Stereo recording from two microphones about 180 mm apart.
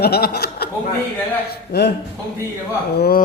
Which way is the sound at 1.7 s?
65° left (ahead or behind).